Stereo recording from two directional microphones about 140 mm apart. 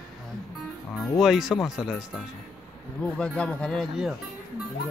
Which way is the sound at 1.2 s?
5° right (ahead or behind).